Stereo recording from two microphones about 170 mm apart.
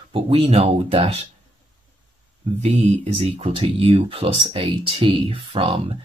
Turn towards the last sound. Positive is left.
turn(degrees=-35)  # may be behind; listen again after turning